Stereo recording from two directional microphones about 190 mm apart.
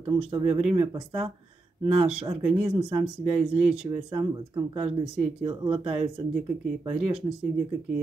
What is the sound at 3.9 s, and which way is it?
Speech, 20° right (ahead or behind).